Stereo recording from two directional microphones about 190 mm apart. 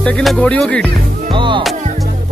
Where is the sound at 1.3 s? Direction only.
25° right (ahead or behind).